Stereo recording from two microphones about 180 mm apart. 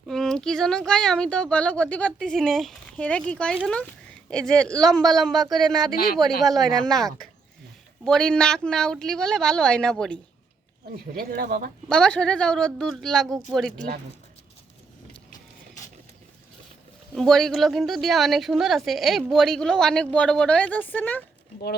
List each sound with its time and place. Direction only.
0.1 s a woman's voice: 5° left (ahead or behind)
5.9 s speech: 55° left (ahead or behind)
6.4 s a woman's voice: centre (ahead or behind)
10.9 s speech: 55° right (ahead or behind)
11.9 s a woman's voice: 5° left (ahead or behind)
17.2 s a woman's voice: centre (ahead or behind)